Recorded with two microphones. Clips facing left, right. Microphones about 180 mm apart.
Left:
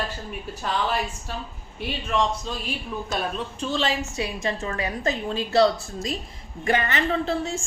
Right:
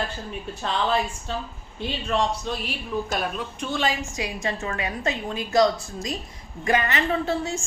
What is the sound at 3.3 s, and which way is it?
A woman's voice, 30° left (ahead or behind).